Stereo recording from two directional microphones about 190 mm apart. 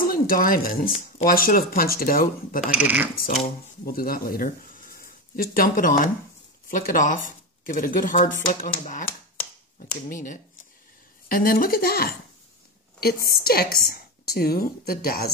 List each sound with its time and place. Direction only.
0.0 s speech: 50° left (ahead or behind)
2.6 s speech: 5° right (ahead or behind)
3.8 s speech: 50° left (ahead or behind)
11.2 s speech: 50° left (ahead or behind)